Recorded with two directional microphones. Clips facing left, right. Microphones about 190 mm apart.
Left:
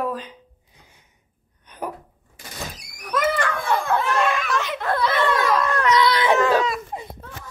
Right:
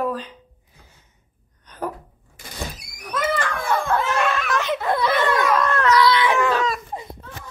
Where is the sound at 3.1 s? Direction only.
Centre (ahead or behind).